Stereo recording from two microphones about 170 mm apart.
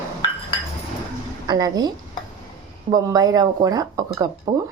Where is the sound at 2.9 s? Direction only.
20° right (ahead or behind).